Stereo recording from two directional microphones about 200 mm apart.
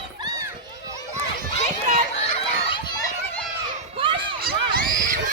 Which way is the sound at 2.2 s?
25° left (ahead or behind).